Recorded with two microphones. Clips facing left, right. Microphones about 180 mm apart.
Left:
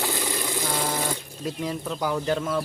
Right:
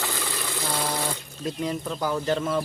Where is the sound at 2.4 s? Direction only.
5° right (ahead or behind).